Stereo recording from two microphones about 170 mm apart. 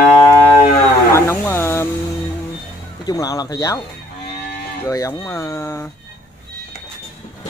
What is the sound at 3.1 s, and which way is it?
Speech, 20° left (ahead or behind).